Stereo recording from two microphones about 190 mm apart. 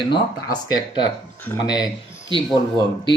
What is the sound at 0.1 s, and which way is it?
Speech, 20° left (ahead or behind).